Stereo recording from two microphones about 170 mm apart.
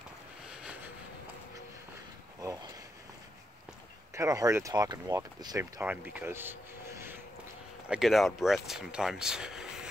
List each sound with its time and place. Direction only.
0.5 s vehicle: 5° right (ahead or behind)
4.1 s speech: 20° right (ahead or behind)
5.8 s speech: 10° right (ahead or behind)
7.9 s speech: centre (ahead or behind)